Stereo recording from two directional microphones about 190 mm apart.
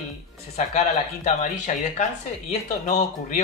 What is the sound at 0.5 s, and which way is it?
A man's voice, 35° left (ahead or behind).